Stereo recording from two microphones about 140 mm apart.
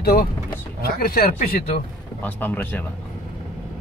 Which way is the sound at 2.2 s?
10° left (ahead or behind).